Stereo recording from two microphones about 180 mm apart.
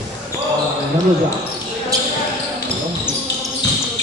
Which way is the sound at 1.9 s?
20° right (ahead or behind).